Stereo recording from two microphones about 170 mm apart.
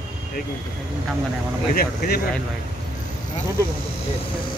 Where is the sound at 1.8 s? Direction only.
60° left (ahead or behind).